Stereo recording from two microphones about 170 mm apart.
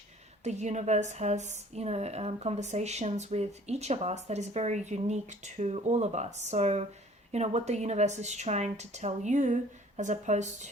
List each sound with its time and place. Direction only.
0.4 s a woman's voice: 40° right (ahead or behind)